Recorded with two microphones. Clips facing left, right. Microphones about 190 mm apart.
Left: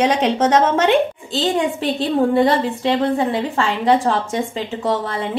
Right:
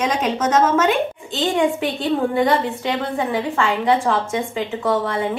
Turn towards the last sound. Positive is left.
turn(degrees=35)  # may be behind; listen again after turning